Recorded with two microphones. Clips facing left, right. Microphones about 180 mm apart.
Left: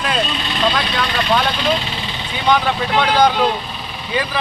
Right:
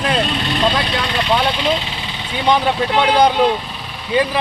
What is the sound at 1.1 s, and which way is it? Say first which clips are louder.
Speech: right 1 dB; 20° right (ahead or behind).